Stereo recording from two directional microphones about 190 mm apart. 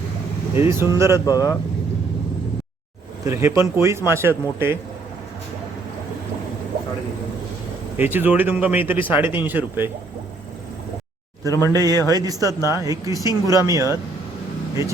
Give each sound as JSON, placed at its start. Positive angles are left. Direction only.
{"t": 0.5, "sound": "speech", "side_deg": -15}
{"t": 1.2, "sound": "speech", "side_deg": 15}
{"t": 3.2, "sound": "speech", "side_deg": -15}
{"t": 7.9, "sound": "speech", "side_deg": -10}
{"t": 11.7, "sound": "speech", "side_deg": -20}